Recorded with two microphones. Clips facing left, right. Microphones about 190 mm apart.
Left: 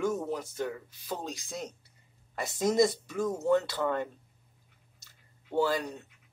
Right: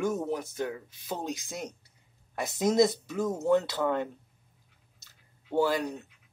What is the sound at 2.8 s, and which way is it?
Speech, 5° right (ahead or behind).